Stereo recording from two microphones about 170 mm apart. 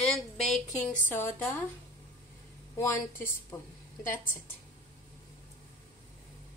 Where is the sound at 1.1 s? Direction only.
15° left (ahead or behind).